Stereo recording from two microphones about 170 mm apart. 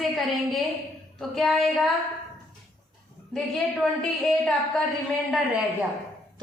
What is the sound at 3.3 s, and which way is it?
A woman's voice, centre (ahead or behind).